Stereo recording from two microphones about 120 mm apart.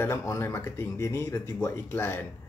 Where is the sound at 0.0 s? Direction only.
20° left (ahead or behind).